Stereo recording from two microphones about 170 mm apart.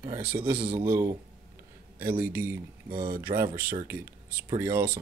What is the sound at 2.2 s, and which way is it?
Speech, 15° right (ahead or behind).